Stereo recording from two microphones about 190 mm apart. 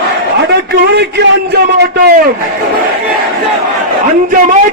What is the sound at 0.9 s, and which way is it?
Speech, 60° right (ahead or behind).